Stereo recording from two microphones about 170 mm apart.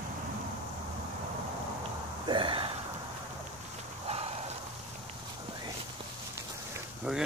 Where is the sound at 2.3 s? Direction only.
30° right (ahead or behind).